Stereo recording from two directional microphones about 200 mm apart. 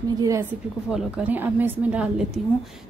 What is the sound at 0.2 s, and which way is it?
A woman's voice, 15° right (ahead or behind).